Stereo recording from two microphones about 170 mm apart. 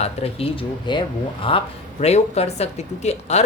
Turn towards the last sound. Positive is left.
turn(degrees=40)  # may be behind; listen again after turning